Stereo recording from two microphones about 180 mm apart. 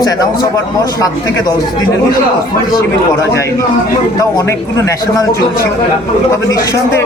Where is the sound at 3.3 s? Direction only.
15° left (ahead or behind).